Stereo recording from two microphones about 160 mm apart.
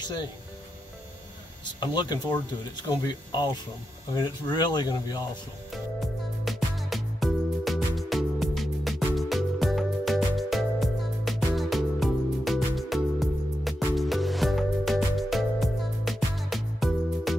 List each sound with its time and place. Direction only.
0.0 s speech: 30° left (ahead or behind)
1.8 s speech: 25° left (ahead or behind)
5.7 s music: centre (ahead or behind)